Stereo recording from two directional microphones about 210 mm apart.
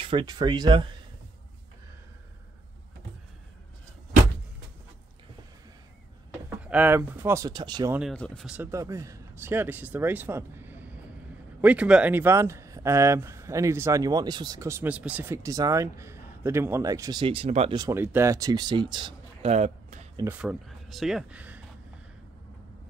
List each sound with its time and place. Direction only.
0.0 s speech: 25° right (ahead or behind)
6.5 s speech: 5° right (ahead or behind)
7.9 s speech: centre (ahead or behind); by 17.7 s 30° right (ahead or behind)
17.7 s speech: 15° right (ahead or behind); by 20.1 s 35° right (ahead or behind)
20.2 s speech: 5° right (ahead or behind)